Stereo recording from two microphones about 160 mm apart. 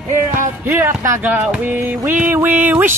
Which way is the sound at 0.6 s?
15° right (ahead or behind).